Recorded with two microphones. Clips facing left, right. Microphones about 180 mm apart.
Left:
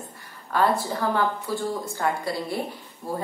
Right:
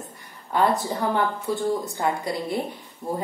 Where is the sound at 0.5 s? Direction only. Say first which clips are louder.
Right 1 dB; 20° right (ahead or behind).